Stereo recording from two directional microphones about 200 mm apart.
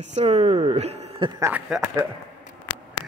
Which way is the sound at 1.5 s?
10° right (ahead or behind).